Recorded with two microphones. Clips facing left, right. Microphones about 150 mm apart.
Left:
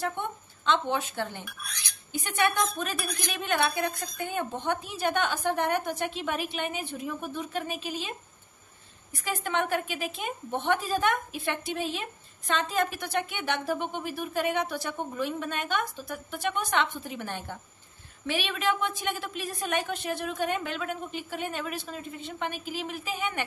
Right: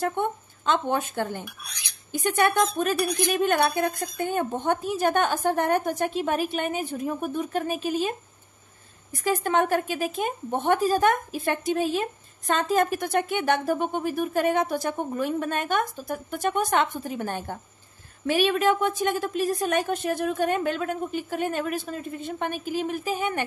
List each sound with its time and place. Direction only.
0.2 s a woman's voice: 45° right (ahead or behind)
9.1 s a woman's voice: 40° right (ahead or behind)